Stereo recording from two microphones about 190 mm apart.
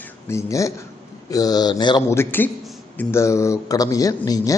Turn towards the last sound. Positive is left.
turn(degrees=20)  # may be behind; listen again after turning